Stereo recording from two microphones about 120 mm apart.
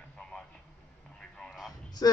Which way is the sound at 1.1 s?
5° left (ahead or behind).